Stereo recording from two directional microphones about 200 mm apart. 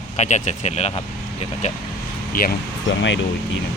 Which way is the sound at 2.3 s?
45° left (ahead or behind).